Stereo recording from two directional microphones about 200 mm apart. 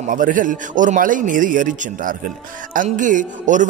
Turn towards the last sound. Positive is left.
turn(degrees=-40)  # may be behind; listen again after turning